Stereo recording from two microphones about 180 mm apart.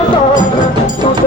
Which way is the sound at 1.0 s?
30° left (ahead or behind).